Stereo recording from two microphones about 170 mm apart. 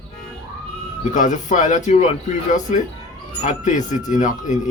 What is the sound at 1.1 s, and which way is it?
Speech, 45° left (ahead or behind).